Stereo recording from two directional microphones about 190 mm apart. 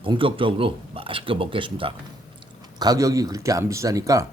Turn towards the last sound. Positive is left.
turn(degrees=-15)  # may be behind; listen again after turning